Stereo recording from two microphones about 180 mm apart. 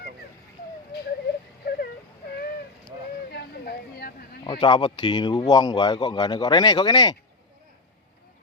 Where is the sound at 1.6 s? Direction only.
60° left (ahead or behind).